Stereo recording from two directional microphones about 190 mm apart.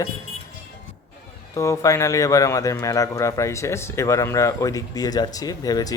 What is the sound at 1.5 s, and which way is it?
A man's voice, 15° left (ahead or behind).